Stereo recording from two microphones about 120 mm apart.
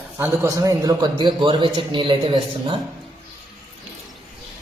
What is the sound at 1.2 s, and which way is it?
A man's voice, 40° right (ahead or behind).